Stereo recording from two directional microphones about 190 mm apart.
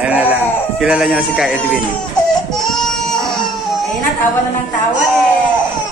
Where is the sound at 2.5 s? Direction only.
Centre (ahead or behind).